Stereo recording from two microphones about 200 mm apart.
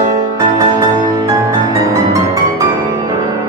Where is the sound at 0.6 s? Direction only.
15° right (ahead or behind).